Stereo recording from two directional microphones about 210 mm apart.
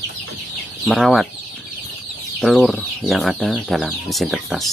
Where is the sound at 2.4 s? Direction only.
Centre (ahead or behind).